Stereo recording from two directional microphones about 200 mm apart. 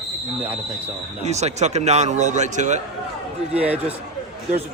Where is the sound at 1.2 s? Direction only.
35° right (ahead or behind).